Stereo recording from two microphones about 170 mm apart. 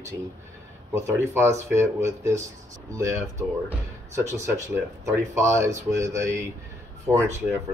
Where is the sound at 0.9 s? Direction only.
15° right (ahead or behind).